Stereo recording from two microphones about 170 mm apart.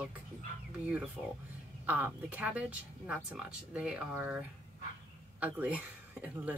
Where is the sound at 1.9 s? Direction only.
10° right (ahead or behind).